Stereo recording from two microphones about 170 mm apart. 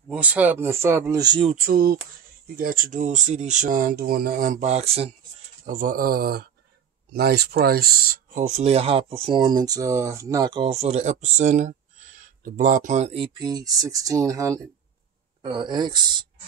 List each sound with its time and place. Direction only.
0.1 s speech: 10° right (ahead or behind); by 1.5 s 25° right (ahead or behind)
1.6 s speech: 60° right (ahead or behind); by 5.1 s 35° right (ahead or behind)
5.7 s speech: 55° right (ahead or behind)
8.5 s speech: 40° right (ahead or behind)